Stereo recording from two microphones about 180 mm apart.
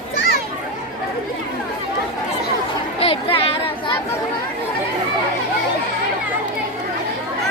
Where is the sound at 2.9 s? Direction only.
30° left (ahead or behind).